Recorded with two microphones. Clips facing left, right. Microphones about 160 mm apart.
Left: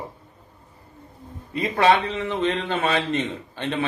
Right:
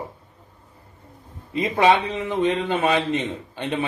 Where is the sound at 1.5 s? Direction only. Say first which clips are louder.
Right 1 dB; 15° right (ahead or behind).